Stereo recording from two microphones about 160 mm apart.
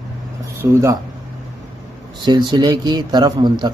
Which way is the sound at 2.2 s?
25° right (ahead or behind).